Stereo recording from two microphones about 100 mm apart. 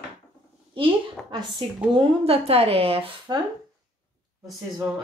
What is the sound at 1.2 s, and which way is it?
Speech, 10° left (ahead or behind).